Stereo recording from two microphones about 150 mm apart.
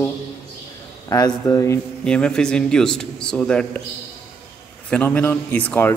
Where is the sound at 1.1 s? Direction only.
25° left (ahead or behind).